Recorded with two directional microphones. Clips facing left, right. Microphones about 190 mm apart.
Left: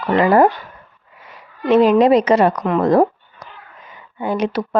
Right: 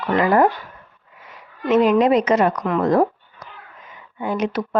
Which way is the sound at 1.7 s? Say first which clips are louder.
Left 3 dB; 35° left (ahead or behind).